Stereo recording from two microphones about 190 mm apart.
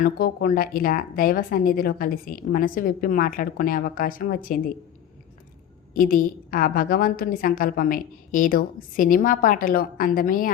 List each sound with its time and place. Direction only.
0.0 s speech: 45° left (ahead or behind)
5.9 s speech: 50° left (ahead or behind)